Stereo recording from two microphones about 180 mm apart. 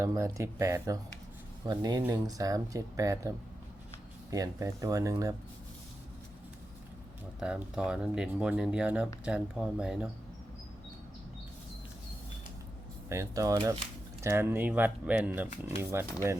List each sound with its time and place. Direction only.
0.0 s speech: 15° right (ahead or behind)
7.3 s speech: 5° right (ahead or behind)
13.1 s speech: 15° right (ahead or behind)